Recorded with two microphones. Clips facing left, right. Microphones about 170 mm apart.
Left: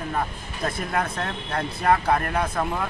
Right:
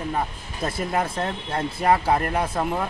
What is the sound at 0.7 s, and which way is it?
Speech, 25° right (ahead or behind).